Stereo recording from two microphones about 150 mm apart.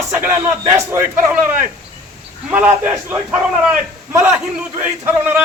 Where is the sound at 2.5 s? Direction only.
10° right (ahead or behind).